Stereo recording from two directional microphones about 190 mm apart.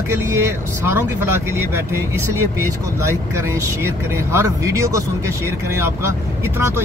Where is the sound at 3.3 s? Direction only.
15° right (ahead or behind).